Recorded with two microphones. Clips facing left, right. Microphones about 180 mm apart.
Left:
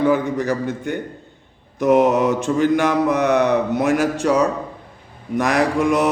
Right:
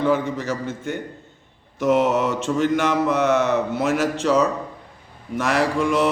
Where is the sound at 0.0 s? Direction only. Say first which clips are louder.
Left 3 dB; 15° left (ahead or behind).